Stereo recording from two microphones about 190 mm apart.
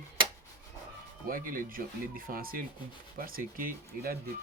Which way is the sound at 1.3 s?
50° right (ahead or behind).